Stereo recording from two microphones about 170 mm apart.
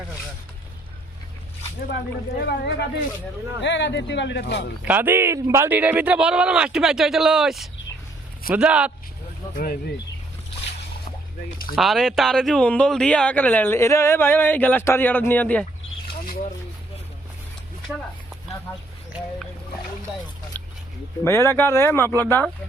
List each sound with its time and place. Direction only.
2.5 s speech: 80° left
3.6 s speech: 90° left
4.9 s a man's voice: 10° right (ahead or behind)
11.7 s speech: centre (ahead or behind)
16.2 s a sound: 55° left (ahead or behind)
20.5 s a sound: 10° left (ahead or behind)
21.2 s speech: 15° left (ahead or behind)